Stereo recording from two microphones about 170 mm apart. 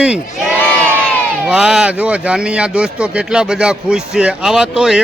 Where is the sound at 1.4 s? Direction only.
5° right (ahead or behind).